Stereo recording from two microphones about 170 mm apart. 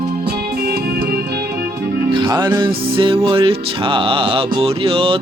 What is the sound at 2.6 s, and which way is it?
Music, 30° right (ahead or behind).